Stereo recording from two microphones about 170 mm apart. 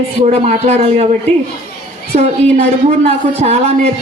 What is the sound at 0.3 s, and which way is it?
Speech, 40° right (ahead or behind).